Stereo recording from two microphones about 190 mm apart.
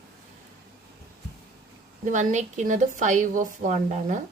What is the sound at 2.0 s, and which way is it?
A woman's voice, 40° right (ahead or behind).